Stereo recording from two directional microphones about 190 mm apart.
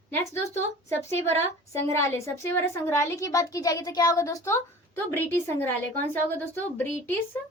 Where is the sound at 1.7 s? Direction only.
15° left (ahead or behind).